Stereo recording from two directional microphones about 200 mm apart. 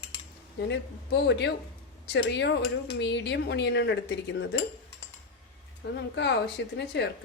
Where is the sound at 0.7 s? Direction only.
60° left (ahead or behind).